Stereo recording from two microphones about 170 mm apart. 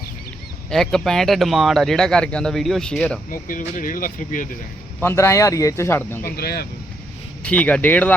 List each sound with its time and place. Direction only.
0.7 s speech: 5° left (ahead or behind)
3.2 s speech: 55° left (ahead or behind)
4.9 s speech: 15° left (ahead or behind)
6.3 s speech: 65° left (ahead or behind)
7.4 s speech: 10° left (ahead or behind)